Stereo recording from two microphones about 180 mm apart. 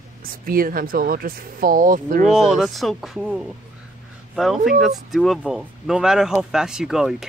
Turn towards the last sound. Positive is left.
turn(degrees=-5)  # may be behind; listen again after turning